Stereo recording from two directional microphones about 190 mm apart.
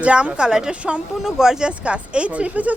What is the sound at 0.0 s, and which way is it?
A woman's voice, 5° right (ahead or behind).